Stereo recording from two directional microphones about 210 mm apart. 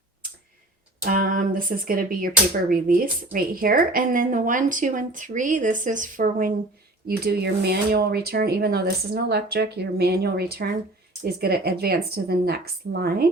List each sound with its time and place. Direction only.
1.0 s a woman's voice: 40° right (ahead or behind)